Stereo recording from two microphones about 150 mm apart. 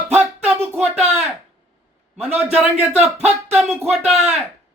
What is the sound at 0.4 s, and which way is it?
Music, 5° right (ahead or behind).